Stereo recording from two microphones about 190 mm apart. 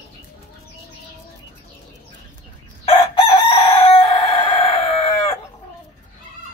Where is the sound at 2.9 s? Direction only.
30° left (ahead or behind).